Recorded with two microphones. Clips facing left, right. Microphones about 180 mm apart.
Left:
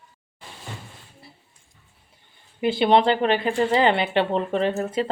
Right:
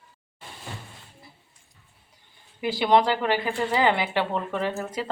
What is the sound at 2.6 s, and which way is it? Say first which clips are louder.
Speech: left 3 dB; 25° left (ahead or behind).